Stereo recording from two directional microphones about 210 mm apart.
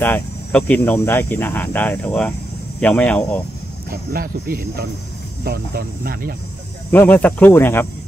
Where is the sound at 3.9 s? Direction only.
45° right (ahead or behind).